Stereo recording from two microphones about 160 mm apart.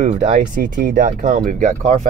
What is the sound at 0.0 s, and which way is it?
Speech, 45° right (ahead or behind).